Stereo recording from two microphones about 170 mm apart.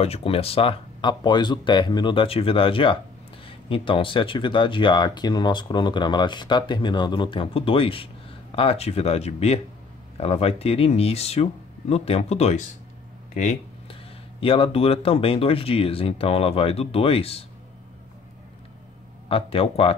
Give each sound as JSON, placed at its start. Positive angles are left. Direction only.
{"t": 0.0, "sound": "speech", "side_deg": 35}
{"t": 14.4, "sound": "speech", "side_deg": 35}
{"t": 19.2, "sound": "speech", "side_deg": 35}